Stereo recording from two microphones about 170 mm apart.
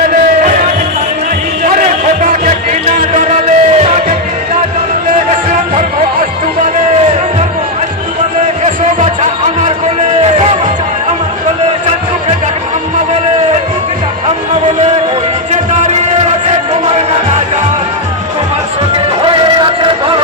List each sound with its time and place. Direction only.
1.8 s a sound: 50° right (ahead or behind)
3.1 s music: 45° right (ahead or behind)
18.9 s music: 30° right (ahead or behind)